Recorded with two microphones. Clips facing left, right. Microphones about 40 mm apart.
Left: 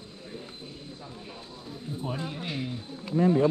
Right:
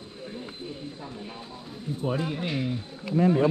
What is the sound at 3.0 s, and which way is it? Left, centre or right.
Speech, right.